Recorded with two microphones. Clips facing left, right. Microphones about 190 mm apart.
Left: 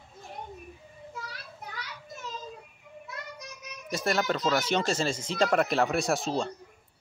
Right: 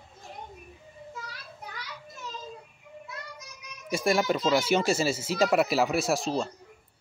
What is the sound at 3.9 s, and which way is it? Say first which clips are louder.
Speech: right 3 dB; 10° right (ahead or behind).